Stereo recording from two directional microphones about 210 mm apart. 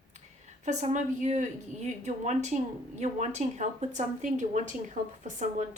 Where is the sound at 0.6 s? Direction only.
35° right (ahead or behind).